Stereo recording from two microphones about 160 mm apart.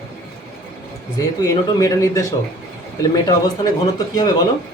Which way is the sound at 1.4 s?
20° left (ahead or behind).